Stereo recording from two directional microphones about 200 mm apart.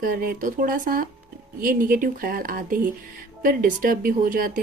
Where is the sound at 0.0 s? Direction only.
45° right (ahead or behind).